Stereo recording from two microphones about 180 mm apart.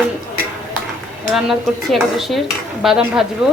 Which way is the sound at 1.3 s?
Centre (ahead or behind).